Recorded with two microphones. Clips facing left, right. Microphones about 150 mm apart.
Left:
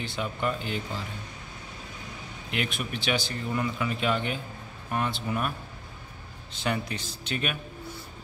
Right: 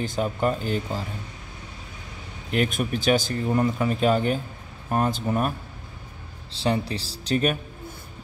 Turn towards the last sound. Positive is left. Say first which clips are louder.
# right 8 dB
turn(degrees=-35)  # may be behind; listen again after turning